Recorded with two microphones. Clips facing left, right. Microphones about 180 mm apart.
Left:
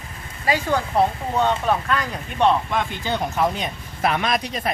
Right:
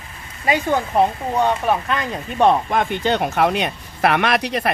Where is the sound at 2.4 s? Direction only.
50° right (ahead or behind); by 4.7 s 70° right (ahead or behind).